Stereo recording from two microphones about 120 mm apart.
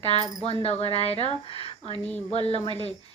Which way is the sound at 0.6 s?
60° left (ahead or behind).